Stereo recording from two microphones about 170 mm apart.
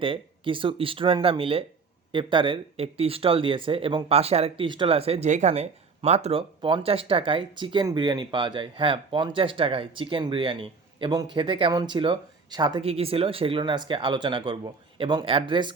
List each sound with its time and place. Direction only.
0.0 s speech: 30° right (ahead or behind)